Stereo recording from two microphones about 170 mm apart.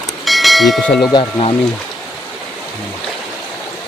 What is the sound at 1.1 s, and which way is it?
Speech, 30° left (ahead or behind).